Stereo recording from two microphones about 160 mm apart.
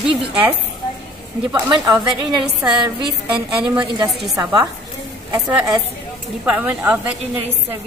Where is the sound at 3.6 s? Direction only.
25° right (ahead or behind).